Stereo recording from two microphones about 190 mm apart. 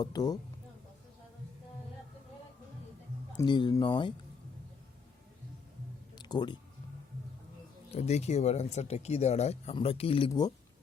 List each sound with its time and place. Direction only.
0.0 s speech: 20° left (ahead or behind)
3.3 s speech: 25° left (ahead or behind)
6.1 s music: 20° left (ahead or behind)
7.9 s speech: 35° left (ahead or behind)